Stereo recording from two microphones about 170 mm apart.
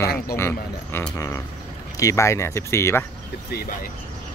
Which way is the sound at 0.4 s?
15° left (ahead or behind).